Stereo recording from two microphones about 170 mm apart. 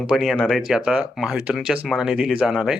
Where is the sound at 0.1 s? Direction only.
Centre (ahead or behind).